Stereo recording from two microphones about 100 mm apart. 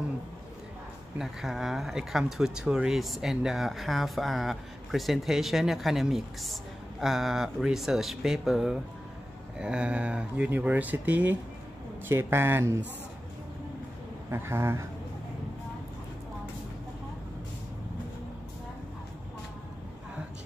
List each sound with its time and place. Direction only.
1.1 s a man's voice: 5° right (ahead or behind); by 12.7 s 25° right (ahead or behind)
14.3 s a man's voice: 25° right (ahead or behind)